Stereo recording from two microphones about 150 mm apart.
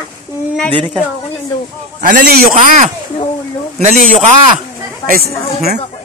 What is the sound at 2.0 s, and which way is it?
A man's voice, 65° right (ahead or behind).